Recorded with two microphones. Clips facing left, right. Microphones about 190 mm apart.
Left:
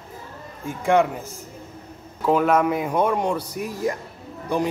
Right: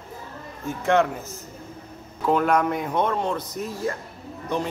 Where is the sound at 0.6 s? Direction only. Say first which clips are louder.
Left 2 dB; 10° left (ahead or behind).